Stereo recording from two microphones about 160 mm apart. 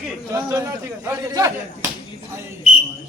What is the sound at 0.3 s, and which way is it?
A man's voice, 20° right (ahead or behind).